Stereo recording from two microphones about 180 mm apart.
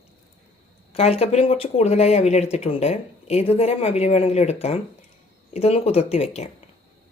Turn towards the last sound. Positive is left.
turn(degrees=35)  # may be behind; listen again after turning